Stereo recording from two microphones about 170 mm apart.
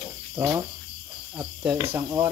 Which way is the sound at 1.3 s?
20° right (ahead or behind).